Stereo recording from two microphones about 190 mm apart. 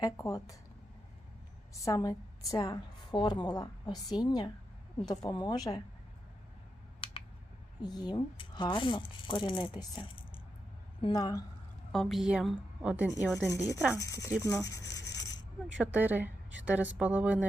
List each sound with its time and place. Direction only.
0.0 s a woman's voice: 15° left (ahead or behind)
1.7 s a woman's voice: 20° left (ahead or behind)
7.0 s a sound: 30° left (ahead or behind)
7.8 s a woman's voice: 20° left (ahead or behind)
11.9 s a woman's voice: centre (ahead or behind)
13.9 s a woman's voice: 15° left (ahead or behind)
15.8 s a woman's voice: 10° right (ahead or behind)